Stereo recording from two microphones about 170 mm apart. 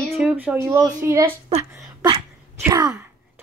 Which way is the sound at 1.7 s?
25° right (ahead or behind).